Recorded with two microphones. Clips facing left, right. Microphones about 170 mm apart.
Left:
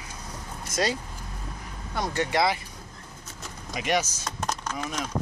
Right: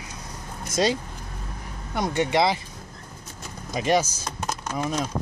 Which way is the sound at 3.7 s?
30° right (ahead or behind).